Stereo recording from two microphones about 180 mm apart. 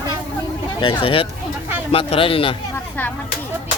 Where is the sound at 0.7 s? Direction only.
30° left (ahead or behind).